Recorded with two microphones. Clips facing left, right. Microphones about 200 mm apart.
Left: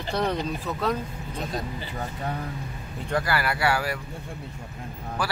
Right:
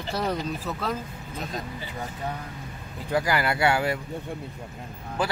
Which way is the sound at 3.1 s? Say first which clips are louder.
Right 2 dB; 15° right (ahead or behind).